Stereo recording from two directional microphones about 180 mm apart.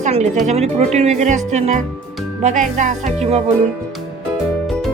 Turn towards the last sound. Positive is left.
turn(degrees=-35)  # may be behind; listen again after turning